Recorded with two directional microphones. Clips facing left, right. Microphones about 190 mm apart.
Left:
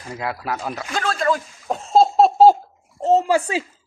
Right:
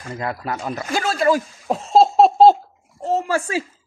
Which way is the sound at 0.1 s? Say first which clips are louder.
Even; 5° left (ahead or behind).